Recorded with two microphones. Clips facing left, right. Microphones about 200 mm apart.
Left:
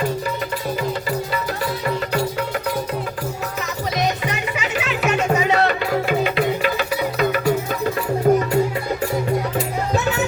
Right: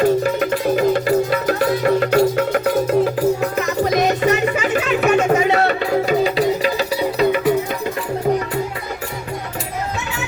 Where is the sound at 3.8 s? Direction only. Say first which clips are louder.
Right 6 dB; 50° right (ahead or behind).